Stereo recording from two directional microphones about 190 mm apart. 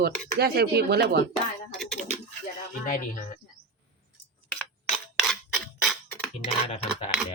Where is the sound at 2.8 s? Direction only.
45° left (ahead or behind).